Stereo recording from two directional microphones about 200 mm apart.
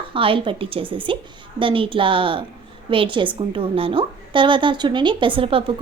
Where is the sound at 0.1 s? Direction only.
25° right (ahead or behind).